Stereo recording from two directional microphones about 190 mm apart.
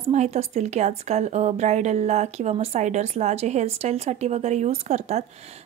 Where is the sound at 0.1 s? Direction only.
35° right (ahead or behind).